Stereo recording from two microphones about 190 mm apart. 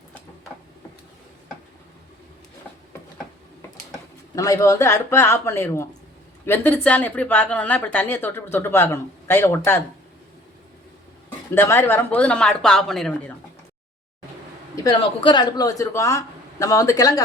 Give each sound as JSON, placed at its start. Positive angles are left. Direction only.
{"t": 4.4, "sound": "a woman's voice", "side_deg": 15}
{"t": 11.5, "sound": "a woman's voice", "side_deg": 10}
{"t": 14.8, "sound": "a man's voice", "side_deg": 25}